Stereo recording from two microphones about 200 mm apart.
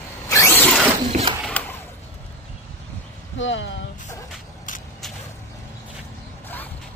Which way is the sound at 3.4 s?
70° left (ahead or behind).